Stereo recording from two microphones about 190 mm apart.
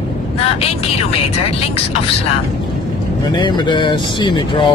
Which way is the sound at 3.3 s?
25° left (ahead or behind).